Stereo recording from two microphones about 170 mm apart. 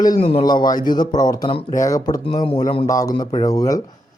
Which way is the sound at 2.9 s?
20° left (ahead or behind).